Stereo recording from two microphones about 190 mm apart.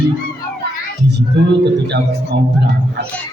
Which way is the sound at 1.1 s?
65° right (ahead or behind).